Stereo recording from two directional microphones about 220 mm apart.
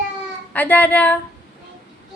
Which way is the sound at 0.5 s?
10° left (ahead or behind).